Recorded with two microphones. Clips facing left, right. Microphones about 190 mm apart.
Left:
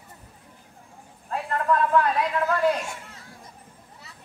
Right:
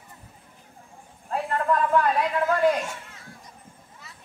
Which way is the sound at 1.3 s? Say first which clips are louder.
Even; 30° right (ahead or behind).